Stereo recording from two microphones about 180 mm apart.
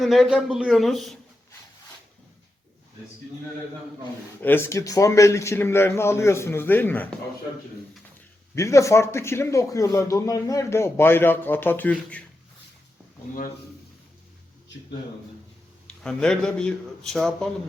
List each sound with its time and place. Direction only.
0.0 s a man's voice: centre (ahead or behind)
4.4 s speech: 10° left (ahead or behind)
8.5 s speech: 15° left (ahead or behind)
16.0 s a man's voice: 5° left (ahead or behind)